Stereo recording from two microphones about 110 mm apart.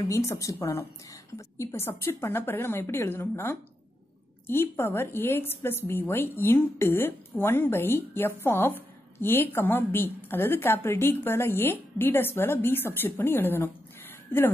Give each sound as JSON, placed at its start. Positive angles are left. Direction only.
{"t": 0.0, "sound": "a woman's voice", "side_deg": 30}